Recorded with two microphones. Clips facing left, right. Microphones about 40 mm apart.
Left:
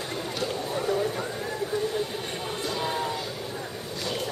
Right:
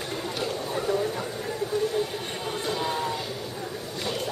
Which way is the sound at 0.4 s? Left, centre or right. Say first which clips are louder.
Even; centre.